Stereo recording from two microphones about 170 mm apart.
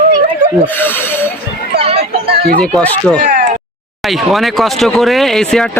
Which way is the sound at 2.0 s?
70° right (ahead or behind).